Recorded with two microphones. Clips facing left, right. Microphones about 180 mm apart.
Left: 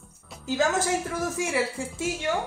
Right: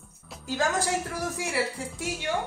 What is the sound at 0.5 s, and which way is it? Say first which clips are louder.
A woman's voice: left 3 dB; 20° left (ahead or behind).